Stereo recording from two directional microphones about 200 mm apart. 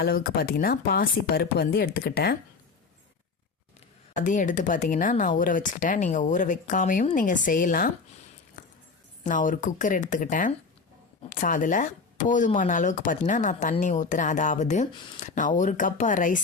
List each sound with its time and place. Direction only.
0.0 s speech: 50° left (ahead or behind)
4.1 s speech: 40° left (ahead or behind)
9.2 s speech: 40° left (ahead or behind)